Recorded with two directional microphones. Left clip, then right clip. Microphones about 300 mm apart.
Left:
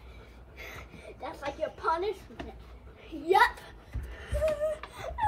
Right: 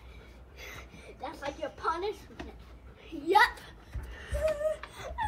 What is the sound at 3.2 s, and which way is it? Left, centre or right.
Speech, centre.